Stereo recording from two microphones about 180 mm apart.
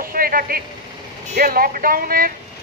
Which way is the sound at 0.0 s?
55° right (ahead or behind).